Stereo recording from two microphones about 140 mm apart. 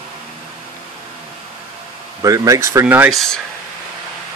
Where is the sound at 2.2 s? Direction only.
25° right (ahead or behind).